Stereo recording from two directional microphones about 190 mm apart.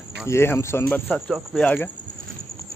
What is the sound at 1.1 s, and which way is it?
Speech, centre (ahead or behind).